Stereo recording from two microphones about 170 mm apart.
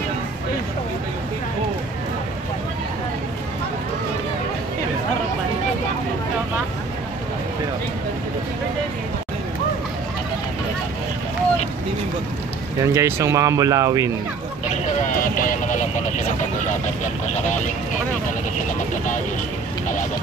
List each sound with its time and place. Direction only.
12.8 s speech: 15° right (ahead or behind)
14.7 s vehicle: 45° left (ahead or behind)